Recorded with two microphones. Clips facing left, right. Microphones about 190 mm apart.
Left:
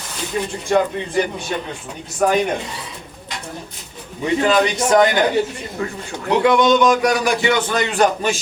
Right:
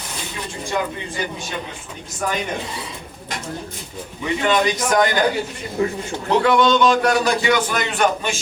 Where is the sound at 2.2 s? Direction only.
55° left (ahead or behind).